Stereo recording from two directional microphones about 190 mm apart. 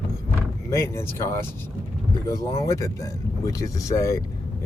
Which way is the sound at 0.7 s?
15° left (ahead or behind).